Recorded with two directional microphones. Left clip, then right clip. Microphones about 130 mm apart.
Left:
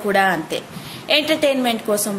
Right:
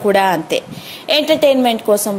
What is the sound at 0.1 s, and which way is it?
A woman's voice, 50° right (ahead or behind).